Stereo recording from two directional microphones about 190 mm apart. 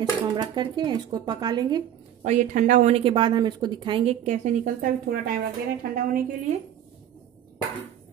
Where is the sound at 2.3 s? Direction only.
40° right (ahead or behind); by 4.1 s 25° right (ahead or behind).